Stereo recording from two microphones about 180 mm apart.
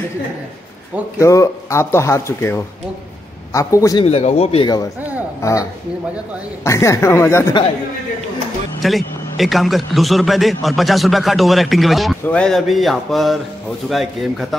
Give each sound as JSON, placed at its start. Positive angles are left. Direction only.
{"t": 1.2, "sound": "speech", "side_deg": 15}
{"t": 4.0, "sound": "speech", "side_deg": 35}
{"t": 4.6, "sound": "speech", "side_deg": 20}
{"t": 8.8, "sound": "a man's voice", "side_deg": 0}